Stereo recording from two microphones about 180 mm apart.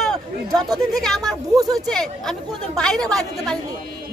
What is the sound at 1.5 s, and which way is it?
Speech, 20° right (ahead or behind).